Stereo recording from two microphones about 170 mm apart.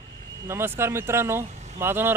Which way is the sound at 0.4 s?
15° right (ahead or behind).